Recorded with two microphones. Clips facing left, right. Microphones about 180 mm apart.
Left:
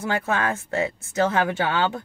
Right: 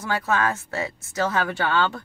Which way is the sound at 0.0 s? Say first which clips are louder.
Even; 20° left (ahead or behind).